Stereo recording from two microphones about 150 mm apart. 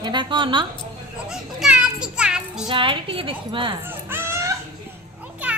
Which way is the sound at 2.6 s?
35° right (ahead or behind).